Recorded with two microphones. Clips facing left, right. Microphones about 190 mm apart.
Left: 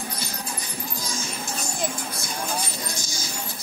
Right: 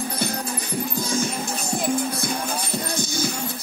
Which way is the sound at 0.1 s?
60° right (ahead or behind).